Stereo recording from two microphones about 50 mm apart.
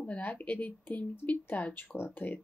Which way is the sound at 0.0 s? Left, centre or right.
Left.